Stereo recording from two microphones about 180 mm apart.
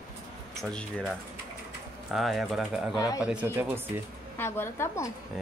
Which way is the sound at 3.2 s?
10° right (ahead or behind).